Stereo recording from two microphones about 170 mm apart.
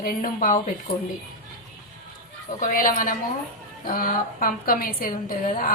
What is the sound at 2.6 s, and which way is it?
Speech, 55° left (ahead or behind).